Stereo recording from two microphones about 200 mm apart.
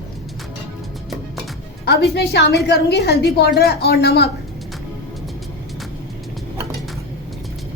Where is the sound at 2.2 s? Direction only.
55° left (ahead or behind).